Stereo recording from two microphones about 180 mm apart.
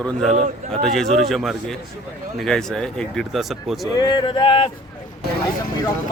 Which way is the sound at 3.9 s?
25° left (ahead or behind).